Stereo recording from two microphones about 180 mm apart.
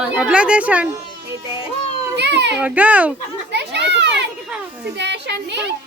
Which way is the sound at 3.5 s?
70° right (ahead or behind).